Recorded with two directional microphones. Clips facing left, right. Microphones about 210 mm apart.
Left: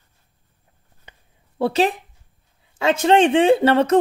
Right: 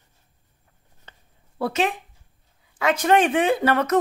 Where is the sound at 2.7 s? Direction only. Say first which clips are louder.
Left 3 dB; 25° left (ahead or behind).